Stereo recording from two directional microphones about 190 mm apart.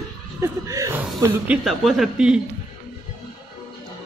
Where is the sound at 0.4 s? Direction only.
15° right (ahead or behind).